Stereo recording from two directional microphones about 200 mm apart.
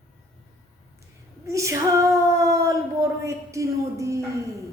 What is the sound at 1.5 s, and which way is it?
Female singing, 15° right (ahead or behind).